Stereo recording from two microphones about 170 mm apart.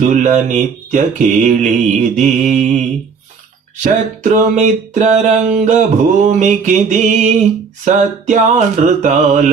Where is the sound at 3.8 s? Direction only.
45° right (ahead or behind).